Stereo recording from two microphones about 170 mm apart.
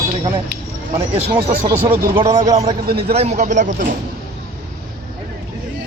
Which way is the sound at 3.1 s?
40° right (ahead or behind).